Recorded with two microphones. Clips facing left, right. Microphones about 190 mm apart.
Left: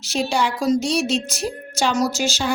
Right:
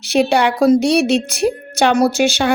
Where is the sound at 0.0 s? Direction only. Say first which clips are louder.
Right 7 dB; 60° right (ahead or behind).